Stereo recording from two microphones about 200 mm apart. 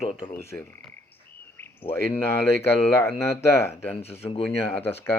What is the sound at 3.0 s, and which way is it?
Speech, 15° left (ahead or behind).